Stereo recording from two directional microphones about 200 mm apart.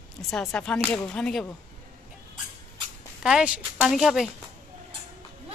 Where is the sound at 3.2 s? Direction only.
5° right (ahead or behind).